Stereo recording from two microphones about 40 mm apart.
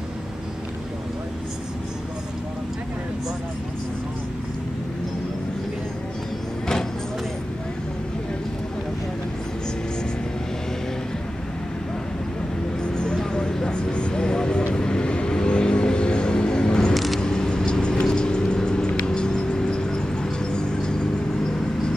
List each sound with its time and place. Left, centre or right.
12.8 s vehicle: left
13.7 s vehicle: left
16.9 s vehicle: centre
17.2 s vehicle: centre